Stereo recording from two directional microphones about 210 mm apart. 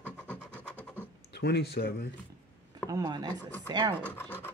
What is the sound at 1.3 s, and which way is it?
Speech, 50° left (ahead or behind).